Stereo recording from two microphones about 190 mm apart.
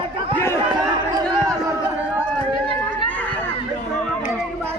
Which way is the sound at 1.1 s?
20° right (ahead or behind).